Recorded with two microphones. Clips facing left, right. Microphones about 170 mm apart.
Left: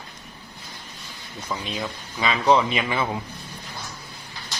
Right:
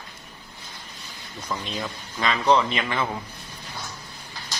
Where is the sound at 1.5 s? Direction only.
5° left (ahead or behind).